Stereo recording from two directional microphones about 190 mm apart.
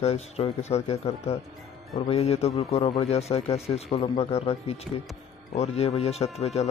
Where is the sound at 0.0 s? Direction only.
35° left (ahead or behind).